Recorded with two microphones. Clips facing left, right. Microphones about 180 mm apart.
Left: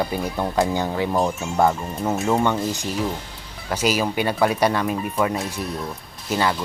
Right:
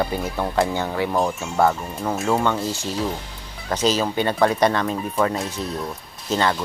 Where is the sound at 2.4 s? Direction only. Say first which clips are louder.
Left 1 dB; 15° left (ahead or behind).